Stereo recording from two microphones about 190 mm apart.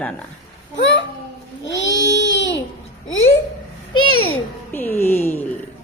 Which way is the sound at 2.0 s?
70° left (ahead or behind).